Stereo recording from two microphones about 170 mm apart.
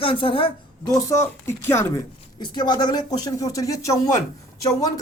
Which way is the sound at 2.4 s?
25° left (ahead or behind).